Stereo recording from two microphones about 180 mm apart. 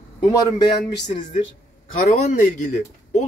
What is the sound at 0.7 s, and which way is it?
Speech, 65° left (ahead or behind).